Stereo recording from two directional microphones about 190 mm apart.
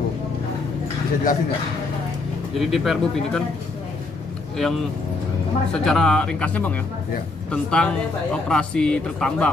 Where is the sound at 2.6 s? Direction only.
Centre (ahead or behind).